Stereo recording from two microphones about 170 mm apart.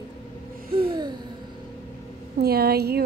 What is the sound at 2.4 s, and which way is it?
Speech, 65° right (ahead or behind).